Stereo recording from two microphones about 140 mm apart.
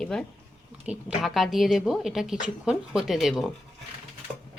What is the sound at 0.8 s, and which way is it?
Speech, 5° right (ahead or behind).